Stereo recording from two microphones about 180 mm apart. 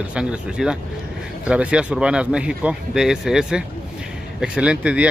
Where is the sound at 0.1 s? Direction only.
5° right (ahead or behind).